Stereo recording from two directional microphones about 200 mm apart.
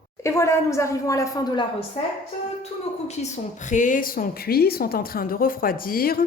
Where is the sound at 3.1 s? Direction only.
35° left (ahead or behind).